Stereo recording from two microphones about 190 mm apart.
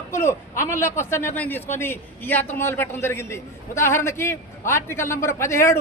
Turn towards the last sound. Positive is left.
turn(degrees=15)  # may be behind; listen again after turning